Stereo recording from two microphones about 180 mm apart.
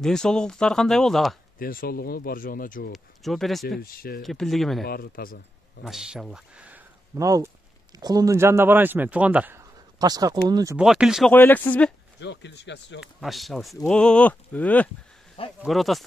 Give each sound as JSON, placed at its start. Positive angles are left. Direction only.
{"t": 0.0, "sound": "speech", "side_deg": 5}
{"t": 1.6, "sound": "speech", "side_deg": 55}
{"t": 2.9, "sound": "speech", "side_deg": 0}
{"t": 3.8, "sound": "speech", "side_deg": 55}
{"t": 4.2, "sound": "speech", "side_deg": 0}
{"t": 4.8, "sound": "speech", "side_deg": 55}
{"t": 5.9, "sound": "speech", "side_deg": -5}
{"t": 7.2, "sound": "speech", "side_deg": -20}
{"t": 10.8, "sound": "speech", "side_deg": -5}
{"t": 11.3, "sound": "speech", "side_deg": 10}
{"t": 12.2, "sound": "speech", "side_deg": 75}
{"t": 13.0, "sound": "speech", "side_deg": 0}